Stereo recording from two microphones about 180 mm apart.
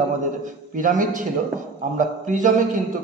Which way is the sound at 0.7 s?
45° right (ahead or behind).